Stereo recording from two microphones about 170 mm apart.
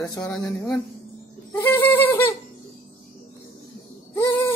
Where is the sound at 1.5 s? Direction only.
15° left (ahead or behind).